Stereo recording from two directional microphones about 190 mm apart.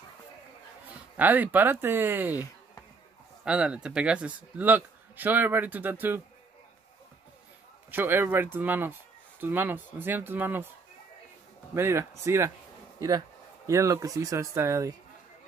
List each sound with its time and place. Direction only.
1.1 s a man's voice: 10° right (ahead or behind)
3.4 s a man's voice: 5° right (ahead or behind)
7.9 s a man's voice: 10° right (ahead or behind)
11.7 s a man's voice: 15° right (ahead or behind)
13.7 s a man's voice: 15° right (ahead or behind)